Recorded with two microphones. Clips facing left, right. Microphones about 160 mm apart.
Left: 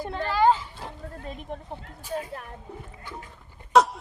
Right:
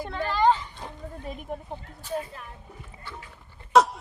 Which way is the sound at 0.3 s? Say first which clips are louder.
Left 1 dB; 10° left (ahead or behind).